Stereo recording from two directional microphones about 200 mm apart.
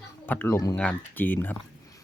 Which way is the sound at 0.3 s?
10° left (ahead or behind).